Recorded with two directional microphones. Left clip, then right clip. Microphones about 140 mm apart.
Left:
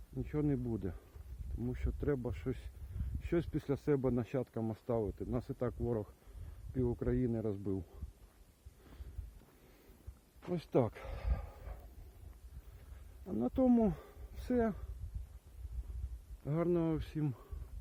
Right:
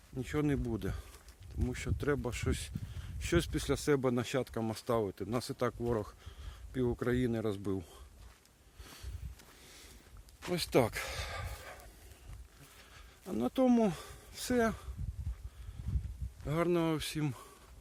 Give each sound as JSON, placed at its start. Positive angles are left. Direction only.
{"t": 0.2, "sound": "speech", "side_deg": -30}
{"t": 4.6, "sound": "speech", "side_deg": -25}
{"t": 5.6, "sound": "speech", "side_deg": -35}
{"t": 10.4, "sound": "a sound", "side_deg": -25}
{"t": 13.4, "sound": "speech", "side_deg": -10}
{"t": 16.4, "sound": "speech", "side_deg": -15}